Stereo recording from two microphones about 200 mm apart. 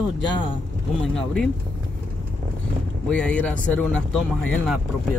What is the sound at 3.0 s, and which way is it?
Speech, 5° left (ahead or behind).